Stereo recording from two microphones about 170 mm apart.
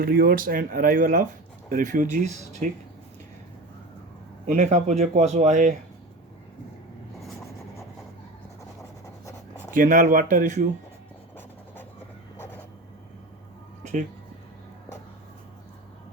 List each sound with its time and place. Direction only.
0.0 s speech: 60° right (ahead or behind); by 2.6 s 45° right (ahead or behind)
4.4 s speech: 45° right (ahead or behind)
9.7 s speech: 50° right (ahead or behind)